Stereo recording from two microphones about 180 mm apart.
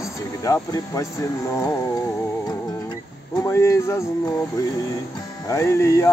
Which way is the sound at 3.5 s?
15° left (ahead or behind).